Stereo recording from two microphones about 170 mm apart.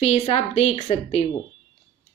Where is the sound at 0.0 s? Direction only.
35° left (ahead or behind).